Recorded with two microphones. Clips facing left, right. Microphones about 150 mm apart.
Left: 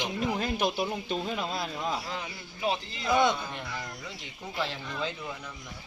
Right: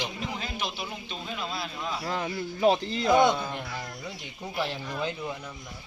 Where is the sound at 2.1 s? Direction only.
45° right (ahead or behind).